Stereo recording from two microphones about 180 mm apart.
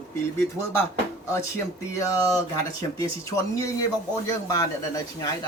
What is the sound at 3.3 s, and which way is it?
A man's voice, 15° left (ahead or behind).